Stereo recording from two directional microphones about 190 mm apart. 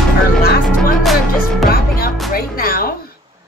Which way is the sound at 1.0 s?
Centre (ahead or behind).